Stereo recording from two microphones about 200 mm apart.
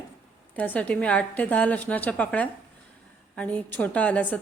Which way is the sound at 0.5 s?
5° left (ahead or behind).